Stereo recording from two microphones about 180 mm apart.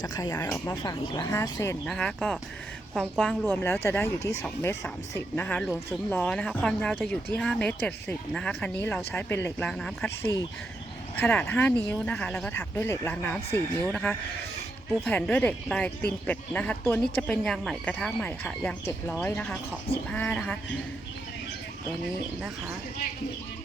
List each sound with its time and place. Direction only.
0.0 s speech: 20° left (ahead or behind)
1.9 s a woman's voice: 5° left (ahead or behind)
3.5 s speech: 15° left (ahead or behind)
11.2 s speech: 10° left (ahead or behind)
22.4 s speech: 5° right (ahead or behind)